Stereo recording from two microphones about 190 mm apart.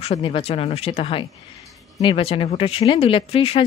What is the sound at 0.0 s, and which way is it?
Speech, 30° left (ahead or behind).